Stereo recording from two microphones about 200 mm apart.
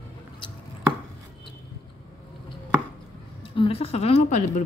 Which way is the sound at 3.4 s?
25° left (ahead or behind).